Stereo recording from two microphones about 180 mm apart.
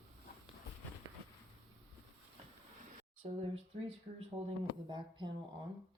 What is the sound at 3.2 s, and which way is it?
Speech, 35° right (ahead or behind).